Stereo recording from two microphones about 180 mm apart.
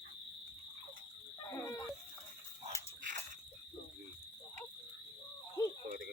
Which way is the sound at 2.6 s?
45° right (ahead or behind).